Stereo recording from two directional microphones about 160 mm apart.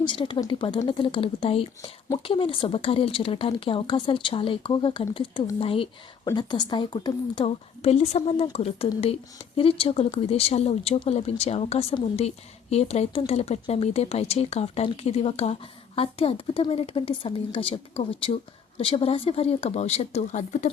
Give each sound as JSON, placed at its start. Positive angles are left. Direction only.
{"t": 0.0, "sound": "a woman's voice", "side_deg": 30}
{"t": 7.4, "sound": "a woman's voice", "side_deg": 40}